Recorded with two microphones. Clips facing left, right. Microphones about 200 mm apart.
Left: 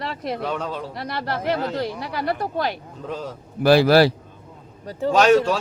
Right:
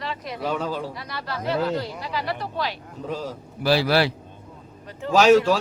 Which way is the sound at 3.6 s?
50° left (ahead or behind).